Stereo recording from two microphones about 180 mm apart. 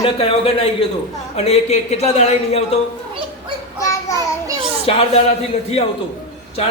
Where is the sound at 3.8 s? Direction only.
15° left (ahead or behind).